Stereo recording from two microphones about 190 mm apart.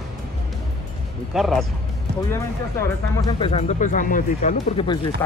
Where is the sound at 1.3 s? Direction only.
Centre (ahead or behind).